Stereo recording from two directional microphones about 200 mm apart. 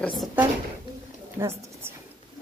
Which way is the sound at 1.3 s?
15° right (ahead or behind).